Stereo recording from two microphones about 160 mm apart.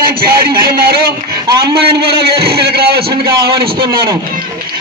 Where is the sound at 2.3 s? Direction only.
80° right.